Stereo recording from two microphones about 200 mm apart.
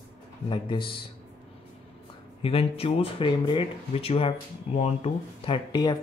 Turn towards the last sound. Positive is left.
turn(degrees=20)  # may be behind; listen again after turning